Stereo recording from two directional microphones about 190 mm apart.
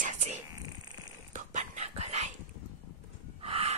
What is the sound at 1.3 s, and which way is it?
Dog, 40° right (ahead or behind).